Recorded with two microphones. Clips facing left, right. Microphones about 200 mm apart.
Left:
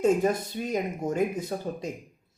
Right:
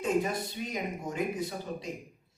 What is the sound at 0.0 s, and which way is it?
Speech, 45° left (ahead or behind).